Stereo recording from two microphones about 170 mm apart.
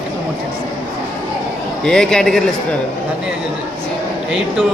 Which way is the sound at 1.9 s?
5° left (ahead or behind).